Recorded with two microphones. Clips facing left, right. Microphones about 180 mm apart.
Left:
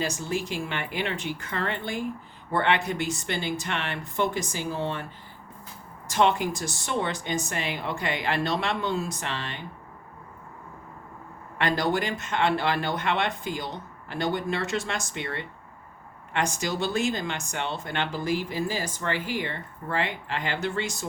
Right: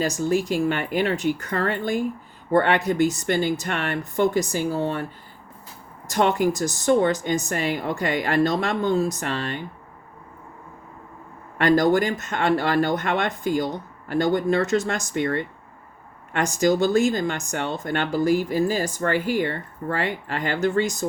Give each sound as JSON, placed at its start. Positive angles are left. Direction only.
{"t": 0.0, "sound": "speech", "side_deg": -45}
{"t": 6.1, "sound": "speech", "side_deg": -45}
{"t": 11.5, "sound": "speech", "side_deg": -45}